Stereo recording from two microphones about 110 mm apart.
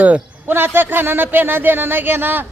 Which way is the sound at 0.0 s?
15° right (ahead or behind).